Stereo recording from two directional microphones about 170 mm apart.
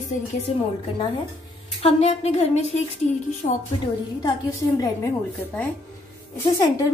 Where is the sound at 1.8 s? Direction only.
35° left (ahead or behind).